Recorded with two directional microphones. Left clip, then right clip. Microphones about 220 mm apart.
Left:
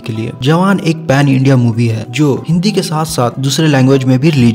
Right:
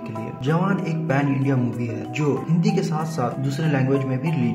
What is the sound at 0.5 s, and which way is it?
A man's voice, 40° left (ahead or behind).